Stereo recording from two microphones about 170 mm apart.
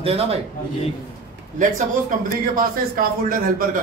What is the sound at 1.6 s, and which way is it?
A man's voice, 55° right (ahead or behind).